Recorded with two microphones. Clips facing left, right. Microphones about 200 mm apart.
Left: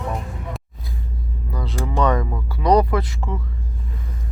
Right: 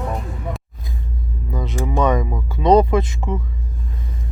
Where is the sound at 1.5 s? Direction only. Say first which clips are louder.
Right 3 dB; 20° right (ahead or behind).